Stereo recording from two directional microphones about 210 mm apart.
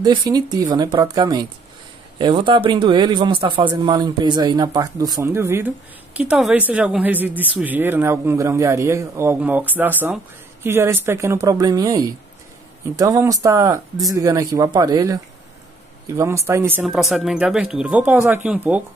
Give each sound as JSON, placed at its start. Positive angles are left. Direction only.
{"t": 0.0, "sound": "speech", "side_deg": -20}
{"t": 16.2, "sound": "speech", "side_deg": -15}